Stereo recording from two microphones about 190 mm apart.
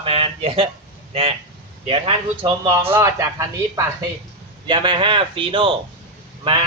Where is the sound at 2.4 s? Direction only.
20° right (ahead or behind).